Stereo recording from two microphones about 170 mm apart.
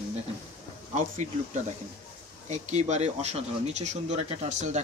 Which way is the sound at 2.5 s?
40° right (ahead or behind).